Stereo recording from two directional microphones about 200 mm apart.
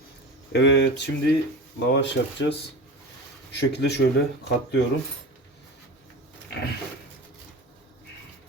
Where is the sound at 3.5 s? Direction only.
60° left (ahead or behind).